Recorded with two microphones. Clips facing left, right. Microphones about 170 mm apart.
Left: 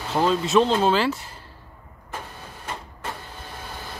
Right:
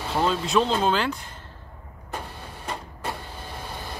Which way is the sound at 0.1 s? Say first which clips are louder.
Left 3 dB; centre (ahead or behind).